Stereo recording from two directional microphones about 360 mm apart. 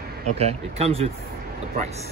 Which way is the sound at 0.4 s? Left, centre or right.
Centre.